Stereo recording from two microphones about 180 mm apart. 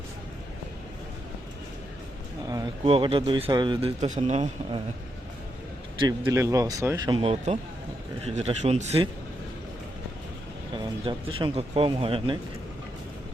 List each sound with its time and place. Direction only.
2.8 s speech: 30° right (ahead or behind)
6.0 s speech: 20° right (ahead or behind); by 9.0 s 35° right (ahead or behind)
11.0 s speech: 30° right (ahead or behind)